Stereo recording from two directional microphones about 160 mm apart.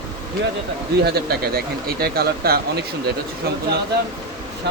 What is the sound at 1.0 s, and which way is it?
Speech, 80° right.